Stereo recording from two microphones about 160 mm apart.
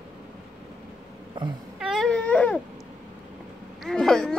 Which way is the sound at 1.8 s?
Centre (ahead or behind).